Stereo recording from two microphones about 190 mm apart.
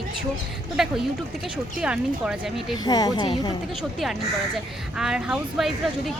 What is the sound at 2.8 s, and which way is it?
Speech, 20° left (ahead or behind).